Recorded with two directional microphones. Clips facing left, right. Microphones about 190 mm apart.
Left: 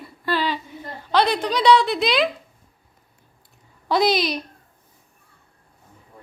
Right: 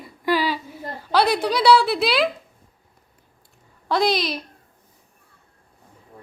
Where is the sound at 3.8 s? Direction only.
Centre (ahead or behind).